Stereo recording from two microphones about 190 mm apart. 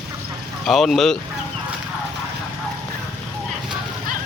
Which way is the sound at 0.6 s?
Centre (ahead or behind).